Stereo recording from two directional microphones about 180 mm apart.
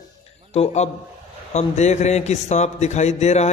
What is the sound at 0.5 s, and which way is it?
A man's voice, 35° left (ahead or behind).